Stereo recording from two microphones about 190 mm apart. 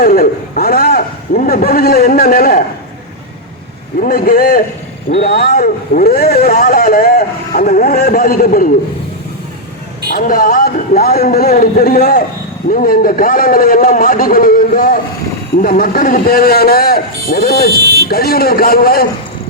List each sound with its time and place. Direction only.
0.0 s speech: 50° left (ahead or behind)
4.0 s speech: 50° left (ahead or behind)
10.1 s speech: 45° left (ahead or behind)